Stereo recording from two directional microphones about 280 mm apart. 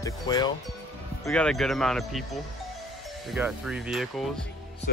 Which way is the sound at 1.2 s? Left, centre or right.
Centre.